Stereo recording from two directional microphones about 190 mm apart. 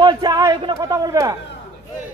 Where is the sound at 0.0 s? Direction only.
25° right (ahead or behind).